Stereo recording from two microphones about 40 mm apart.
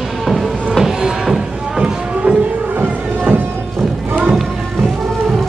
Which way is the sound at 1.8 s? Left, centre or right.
Right.